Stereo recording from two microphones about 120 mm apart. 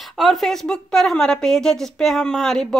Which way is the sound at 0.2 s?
Centre (ahead or behind).